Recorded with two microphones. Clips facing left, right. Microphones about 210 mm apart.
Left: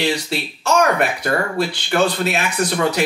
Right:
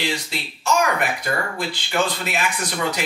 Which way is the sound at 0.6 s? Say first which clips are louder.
Left 4 dB; 70° left (ahead or behind).